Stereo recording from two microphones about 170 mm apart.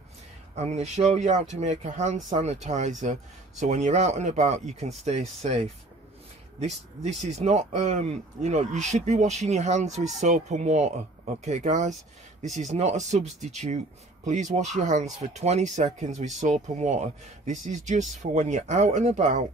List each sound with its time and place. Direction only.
0.6 s speech: 40° right (ahead or behind)
7.0 s speech: 40° right (ahead or behind)